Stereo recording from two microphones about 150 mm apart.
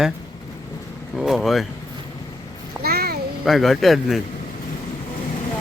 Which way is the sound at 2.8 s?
90° right.